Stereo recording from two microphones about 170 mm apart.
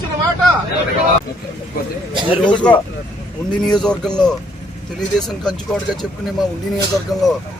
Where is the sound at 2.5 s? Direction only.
5° left (ahead or behind).